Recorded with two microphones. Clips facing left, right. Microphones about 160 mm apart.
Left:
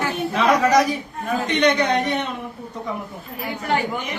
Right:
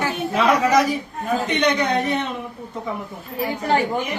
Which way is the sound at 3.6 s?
35° right (ahead or behind).